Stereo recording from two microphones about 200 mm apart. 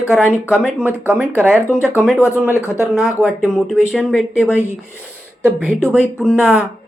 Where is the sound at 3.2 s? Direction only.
5° right (ahead or behind).